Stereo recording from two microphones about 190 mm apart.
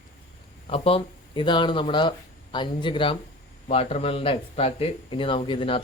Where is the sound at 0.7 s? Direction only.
30° left (ahead or behind).